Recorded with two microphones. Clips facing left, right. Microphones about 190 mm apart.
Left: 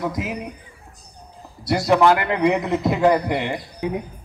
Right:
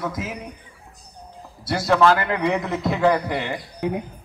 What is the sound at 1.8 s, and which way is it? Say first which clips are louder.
A man's voice: left 1 dB; 15° left (ahead or behind).